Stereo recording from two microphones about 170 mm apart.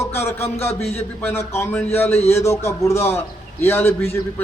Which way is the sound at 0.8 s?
40° left (ahead or behind).